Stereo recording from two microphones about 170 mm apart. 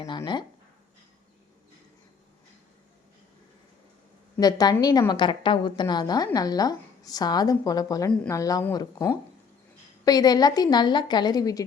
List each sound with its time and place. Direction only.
4.4 s a woman's voice: 20° left (ahead or behind)